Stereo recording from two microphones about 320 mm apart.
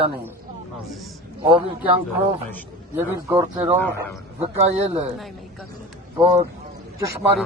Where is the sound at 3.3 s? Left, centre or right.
Centre.